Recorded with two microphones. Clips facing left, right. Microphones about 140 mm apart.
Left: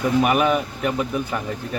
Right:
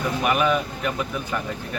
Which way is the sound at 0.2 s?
40° left (ahead or behind).